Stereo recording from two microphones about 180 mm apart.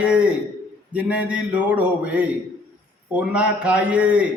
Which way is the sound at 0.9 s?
5° right (ahead or behind).